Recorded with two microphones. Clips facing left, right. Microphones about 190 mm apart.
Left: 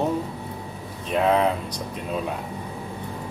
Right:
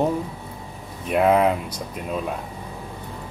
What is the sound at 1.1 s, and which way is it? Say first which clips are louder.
Speech: right 3 dB; 10° right (ahead or behind).